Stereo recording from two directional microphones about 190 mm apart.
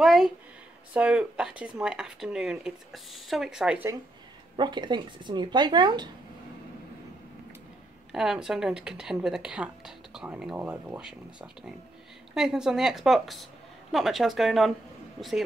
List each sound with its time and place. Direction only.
0.0 s speech: centre (ahead or behind)
4.6 s speech: 25° right (ahead or behind)
8.1 s speech: 5° right (ahead or behind)